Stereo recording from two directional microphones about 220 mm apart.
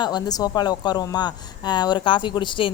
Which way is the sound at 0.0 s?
20° left (ahead or behind).